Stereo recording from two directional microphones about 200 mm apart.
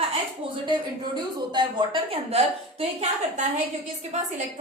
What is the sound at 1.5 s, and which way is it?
A woman's voice, 25° right (ahead or behind).